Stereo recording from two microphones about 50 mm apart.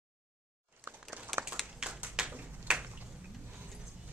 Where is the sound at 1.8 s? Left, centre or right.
Centre.